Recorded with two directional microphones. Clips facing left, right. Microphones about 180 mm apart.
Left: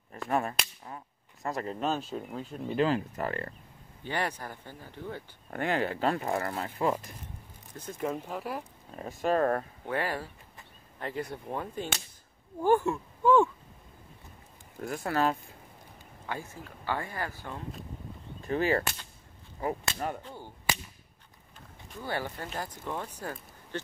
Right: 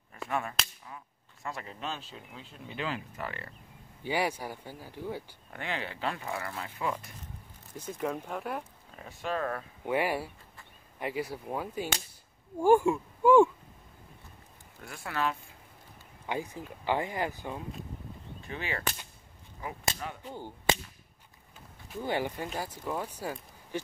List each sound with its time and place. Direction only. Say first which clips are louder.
0.3 s speech: left 4 dB; 40° left (ahead or behind)
4.0 s speech: right 2 dB; 10° right (ahead or behind)
5.5 s speech: left 8 dB; 45° left (ahead or behind)
8.0 s speech: left 1 dB; centre (ahead or behind)
8.9 s speech: left 7 dB; 40° left (ahead or behind)
9.8 s speech: right 4 dB; 10° right (ahead or behind)
14.8 s speech: left 5 dB; 40° left (ahead or behind)
16.3 s speech: right 4 dB; 15° right (ahead or behind)
18.4 s cap gun: left 10 dB; 40° left (ahead or behind)
20.2 s speech: right 4 dB; 15° right (ahead or behind)
22.0 s speech: right 3 dB; 15° right (ahead or behind)